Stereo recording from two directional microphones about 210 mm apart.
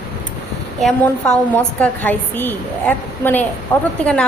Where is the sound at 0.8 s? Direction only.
5° left (ahead or behind).